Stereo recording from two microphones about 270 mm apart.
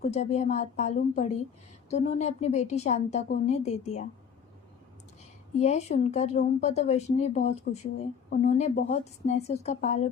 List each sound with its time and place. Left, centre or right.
0.0 s speech: left
5.5 s speech: left